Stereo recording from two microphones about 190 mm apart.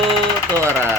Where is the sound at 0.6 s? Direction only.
15° right (ahead or behind).